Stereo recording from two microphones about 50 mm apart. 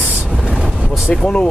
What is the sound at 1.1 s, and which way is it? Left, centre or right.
Speech, centre.